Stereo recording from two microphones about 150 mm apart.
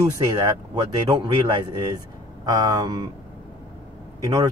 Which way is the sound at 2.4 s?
25° right (ahead or behind).